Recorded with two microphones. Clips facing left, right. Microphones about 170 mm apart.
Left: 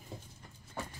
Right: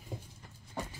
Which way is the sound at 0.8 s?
15° right (ahead or behind).